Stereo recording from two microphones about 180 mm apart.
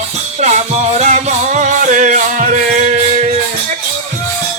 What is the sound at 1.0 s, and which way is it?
Music, 40° right (ahead or behind).